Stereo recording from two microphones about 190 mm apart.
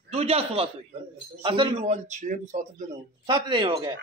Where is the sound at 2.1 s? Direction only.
40° right (ahead or behind).